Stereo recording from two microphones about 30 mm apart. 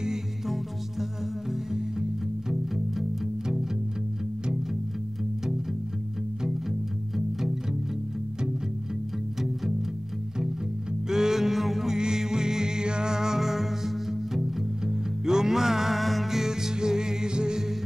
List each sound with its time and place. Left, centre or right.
1.5 s music: centre
11.1 s music: centre
12.0 s music: right
16.0 s music: centre
16.3 s music: centre